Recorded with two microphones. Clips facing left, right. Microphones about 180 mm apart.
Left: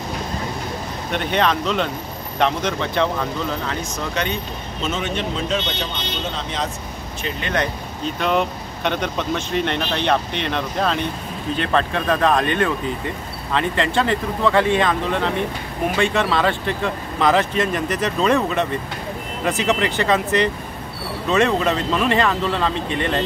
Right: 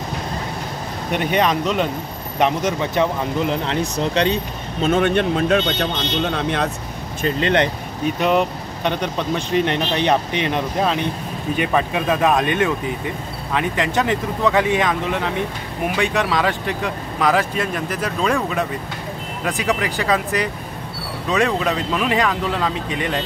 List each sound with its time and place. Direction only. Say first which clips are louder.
1.1 s speech: right 2 dB; 10° right (ahead or behind)
3.9 s speech: right 7 dB; 35° right (ahead or behind)
4.8 s speech: right 8 dB; 55° right (ahead or behind)
7.2 s speech: right 6 dB; 30° right (ahead or behind)
8.2 s speech: right 2 dB; 5° right (ahead or behind)